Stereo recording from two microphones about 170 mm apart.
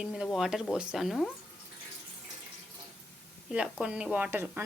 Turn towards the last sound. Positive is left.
turn(degrees=-10)  # may be behind; listen again after turning